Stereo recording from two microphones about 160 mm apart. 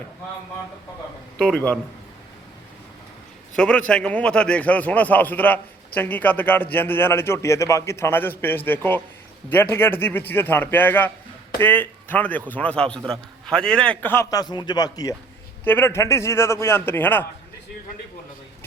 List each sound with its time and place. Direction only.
1.4 s a man's voice: 5° left (ahead or behind)
3.5 s speech: 5° left (ahead or behind)
14.0 s speech: 15° left (ahead or behind)
15.6 s speech: 15° left (ahead or behind)